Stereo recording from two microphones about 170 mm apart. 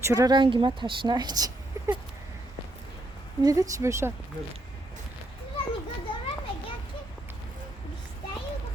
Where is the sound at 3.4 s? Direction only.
20° right (ahead or behind).